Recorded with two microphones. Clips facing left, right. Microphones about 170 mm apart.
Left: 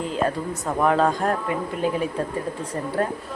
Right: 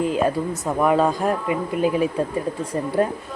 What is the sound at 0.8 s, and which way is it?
Speech, 10° right (ahead or behind).